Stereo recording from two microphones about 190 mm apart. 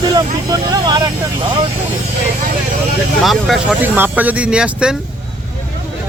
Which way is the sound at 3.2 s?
Centre (ahead or behind).